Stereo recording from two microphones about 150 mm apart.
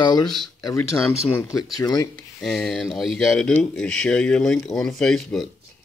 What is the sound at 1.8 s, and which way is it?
Speech, 25° left (ahead or behind).